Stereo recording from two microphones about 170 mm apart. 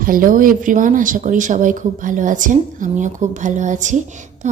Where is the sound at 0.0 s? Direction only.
55° right (ahead or behind).